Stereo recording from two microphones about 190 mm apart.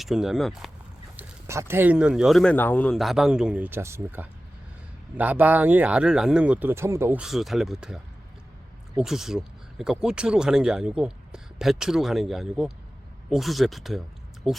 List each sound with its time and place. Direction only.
0.0 s speech: centre (ahead or behind)
1.1 s speech: 15° right (ahead or behind)